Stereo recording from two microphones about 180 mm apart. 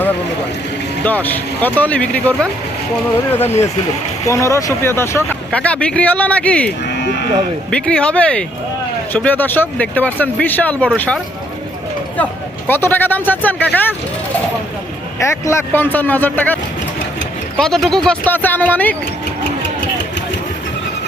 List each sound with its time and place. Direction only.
1.0 s speech: 10° left (ahead or behind)
6.8 s sheep: 65° left (ahead or behind)
7.7 s speech: 5° left (ahead or behind)
15.2 s speech: 15° left (ahead or behind)
17.6 s speech: centre (ahead or behind)